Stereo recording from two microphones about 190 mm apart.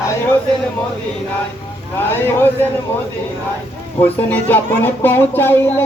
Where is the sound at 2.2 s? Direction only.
10° left (ahead or behind).